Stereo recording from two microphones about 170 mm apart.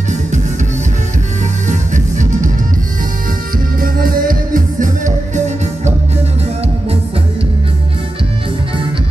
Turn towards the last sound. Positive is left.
turn(degrees=-35)  # may be behind; listen again after turning